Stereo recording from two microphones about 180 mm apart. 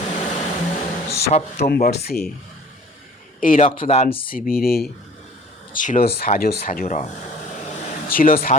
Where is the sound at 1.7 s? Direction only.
60° left (ahead or behind).